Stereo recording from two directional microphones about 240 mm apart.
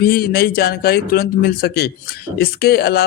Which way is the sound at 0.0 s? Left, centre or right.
Left.